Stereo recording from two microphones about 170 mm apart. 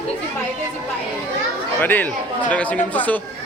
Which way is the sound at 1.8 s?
10° left (ahead or behind).